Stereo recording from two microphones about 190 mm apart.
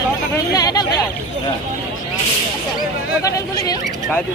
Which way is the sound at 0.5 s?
20° left (ahead or behind).